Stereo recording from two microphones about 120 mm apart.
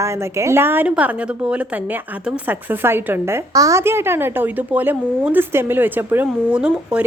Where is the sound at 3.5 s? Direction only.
30° right (ahead or behind); by 7.1 s 10° right (ahead or behind).